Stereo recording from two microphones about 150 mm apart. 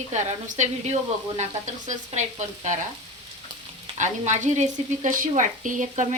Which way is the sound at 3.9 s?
55° right (ahead or behind).